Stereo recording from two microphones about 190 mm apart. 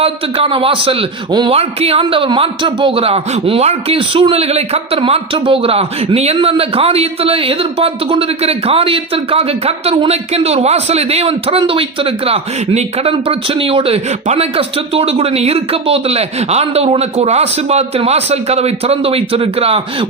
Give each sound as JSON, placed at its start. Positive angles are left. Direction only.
{"t": 0.0, "sound": "a man's voice", "side_deg": -30}